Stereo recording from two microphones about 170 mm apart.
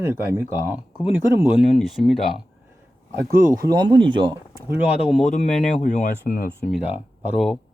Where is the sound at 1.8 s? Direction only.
Centre (ahead or behind).